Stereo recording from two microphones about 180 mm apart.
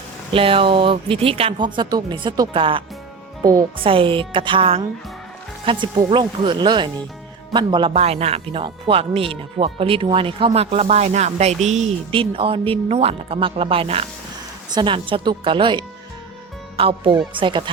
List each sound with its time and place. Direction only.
0.3 s speech: 30° right (ahead or behind)
3.4 s speech: 20° right (ahead or behind)
3.8 s speech: 30° right (ahead or behind)